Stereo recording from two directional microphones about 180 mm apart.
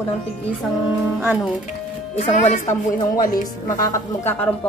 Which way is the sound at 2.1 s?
40° left (ahead or behind).